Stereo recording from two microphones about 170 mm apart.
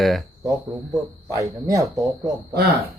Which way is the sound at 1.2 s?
20° right (ahead or behind).